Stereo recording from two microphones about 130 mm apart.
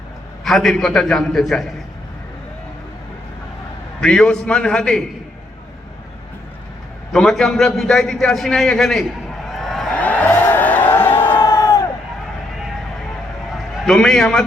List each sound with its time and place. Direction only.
0.4 s a man's voice: centre (ahead or behind)
4.0 s a man's voice: 5° left (ahead or behind)
7.1 s a man's voice: 5° left (ahead or behind)
9.5 s a sound: centre (ahead or behind)
10.0 s a sound: 15° left (ahead or behind)
11.3 s crowd: 30° left (ahead or behind)
13.8 s a man's voice: 5° left (ahead or behind)